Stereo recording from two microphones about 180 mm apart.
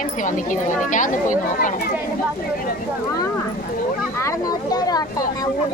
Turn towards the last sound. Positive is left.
turn(degrees=20)  # may be behind; listen again after turning